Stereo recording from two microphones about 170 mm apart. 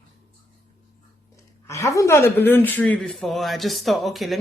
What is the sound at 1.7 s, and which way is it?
A woman's voice, 15° left (ahead or behind).